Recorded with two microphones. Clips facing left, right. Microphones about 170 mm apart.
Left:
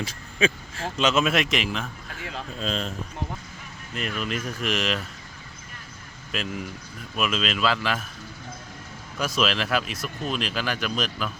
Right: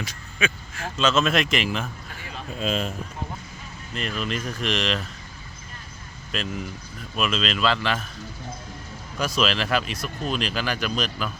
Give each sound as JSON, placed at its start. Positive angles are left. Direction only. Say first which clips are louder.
{"t": 0.0, "sound": "speech", "louder": "left 4 dB", "side_deg": 30}
{"t": 0.9, "sound": "speech", "louder": "right 1 dB", "side_deg": 15}
{"t": 1.2, "sound": "speech", "louder": "right 1 dB", "side_deg": 5}
{"t": 4.2, "sound": "speech", "louder": "right 1 dB", "side_deg": 5}
{"t": 6.3, "sound": "speech", "louder": "right 1 dB", "side_deg": 5}
{"t": 9.1, "sound": "speech", "louder": "right 1 dB", "side_deg": 0}